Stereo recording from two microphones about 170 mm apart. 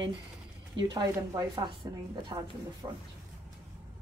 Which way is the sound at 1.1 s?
20° right (ahead or behind).